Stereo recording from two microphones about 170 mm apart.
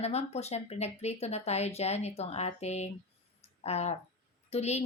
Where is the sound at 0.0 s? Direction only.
40° left (ahead or behind).